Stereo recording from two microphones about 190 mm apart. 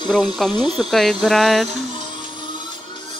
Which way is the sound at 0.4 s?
Centre (ahead or behind).